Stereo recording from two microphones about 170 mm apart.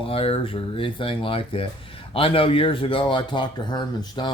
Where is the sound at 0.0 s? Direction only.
35° left (ahead or behind).